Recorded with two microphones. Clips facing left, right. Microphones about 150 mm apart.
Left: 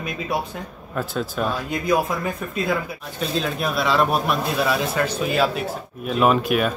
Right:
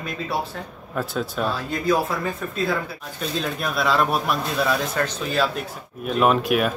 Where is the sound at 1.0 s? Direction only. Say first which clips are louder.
Left 1 dB; centre (ahead or behind).